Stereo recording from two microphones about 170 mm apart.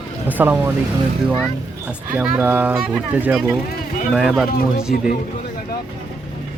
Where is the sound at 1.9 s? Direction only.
10° right (ahead or behind).